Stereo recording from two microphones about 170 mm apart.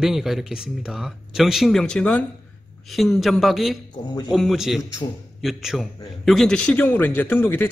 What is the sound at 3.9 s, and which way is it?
Speech, 25° left (ahead or behind).